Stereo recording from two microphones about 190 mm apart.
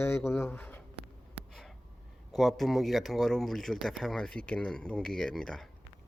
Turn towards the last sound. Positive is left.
turn(degrees=0)  # may be behind; listen again after turning